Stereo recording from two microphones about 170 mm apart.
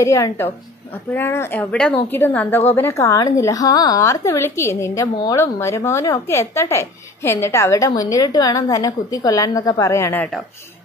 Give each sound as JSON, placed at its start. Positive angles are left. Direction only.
{"t": 0.0, "sound": "a woman's voice", "side_deg": 15}